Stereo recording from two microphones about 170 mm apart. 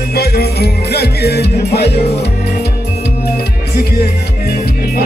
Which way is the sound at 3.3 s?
65° left (ahead or behind).